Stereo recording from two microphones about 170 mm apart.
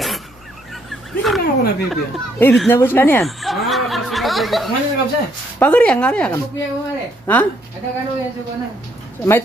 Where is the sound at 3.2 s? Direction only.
Centre (ahead or behind).